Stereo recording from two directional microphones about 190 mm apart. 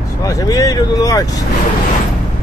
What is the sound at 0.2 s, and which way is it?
Speech, 20° left (ahead or behind).